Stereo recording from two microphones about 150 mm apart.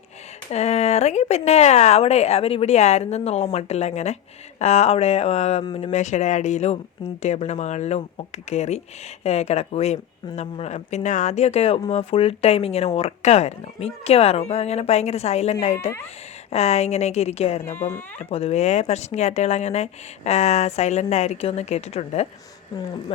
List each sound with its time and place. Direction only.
0.5 s speech: 45° left (ahead or behind)
5.9 s speech: 50° left (ahead or behind)